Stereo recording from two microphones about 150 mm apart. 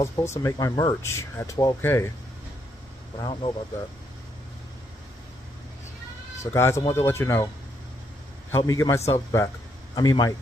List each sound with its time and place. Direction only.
0.1 s speech: 20° left (ahead or behind)
3.2 s speech: 35° left (ahead or behind)
6.4 s speech: 20° left (ahead or behind)
8.5 s speech: 20° left (ahead or behind)